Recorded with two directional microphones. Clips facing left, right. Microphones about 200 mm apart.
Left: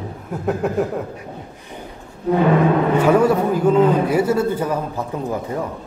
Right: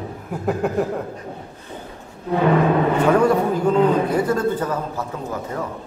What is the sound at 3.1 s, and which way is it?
A man's voice, 5° left (ahead or behind).